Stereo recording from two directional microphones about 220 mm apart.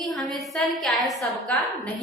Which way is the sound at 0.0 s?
Centre (ahead or behind).